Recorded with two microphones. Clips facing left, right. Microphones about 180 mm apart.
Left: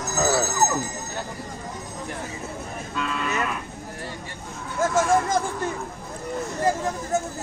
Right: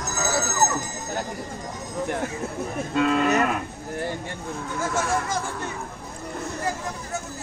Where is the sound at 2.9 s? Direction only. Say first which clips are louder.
Right 7 dB; 55° right (ahead or behind).